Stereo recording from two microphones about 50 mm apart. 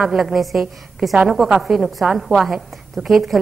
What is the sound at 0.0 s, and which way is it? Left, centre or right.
A woman's voice, centre.